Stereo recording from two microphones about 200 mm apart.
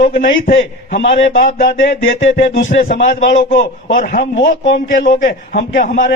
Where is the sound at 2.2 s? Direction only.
40° left (ahead or behind).